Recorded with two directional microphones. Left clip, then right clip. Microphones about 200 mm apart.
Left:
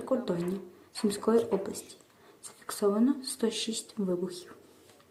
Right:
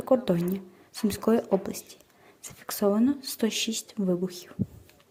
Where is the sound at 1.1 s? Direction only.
45° right (ahead or behind).